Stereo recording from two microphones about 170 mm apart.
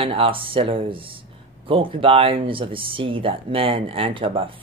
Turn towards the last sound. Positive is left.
turn(degrees=-30)  # may be behind; listen again after turning